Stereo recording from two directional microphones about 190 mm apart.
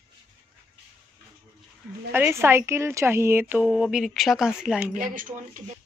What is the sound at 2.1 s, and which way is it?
A woman's voice, 10° right (ahead or behind).